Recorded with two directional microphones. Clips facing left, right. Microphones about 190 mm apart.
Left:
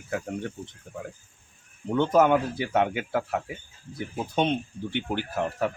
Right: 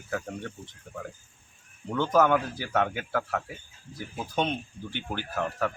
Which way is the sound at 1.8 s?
25° left (ahead or behind).